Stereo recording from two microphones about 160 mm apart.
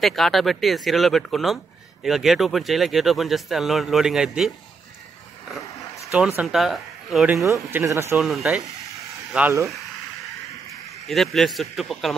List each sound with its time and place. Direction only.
0.0 s speech: centre (ahead or behind)
5.8 s a sound: 20° left (ahead or behind)
6.1 s speech: 5° right (ahead or behind)
7.4 s speech: 20° right (ahead or behind)
8.2 s speech: centre (ahead or behind)
11.1 s speech: centre (ahead or behind)